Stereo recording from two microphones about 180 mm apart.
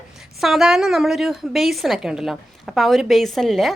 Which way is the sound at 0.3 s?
Centre (ahead or behind).